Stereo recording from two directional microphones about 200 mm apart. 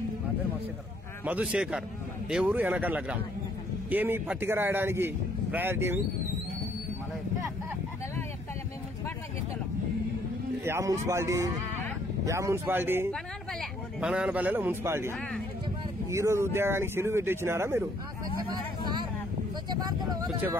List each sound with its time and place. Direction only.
1.2 s a man's voice: 5° right (ahead or behind)
10.6 s a man's voice: 15° right (ahead or behind)
13.1 s a man's voice: centre (ahead or behind)
18.5 s vehicle: 20° right (ahead or behind)